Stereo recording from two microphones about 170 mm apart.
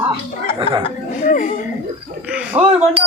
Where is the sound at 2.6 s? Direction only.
35° right (ahead or behind).